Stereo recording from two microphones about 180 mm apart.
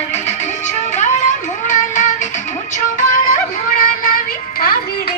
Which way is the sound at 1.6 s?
45° left (ahead or behind).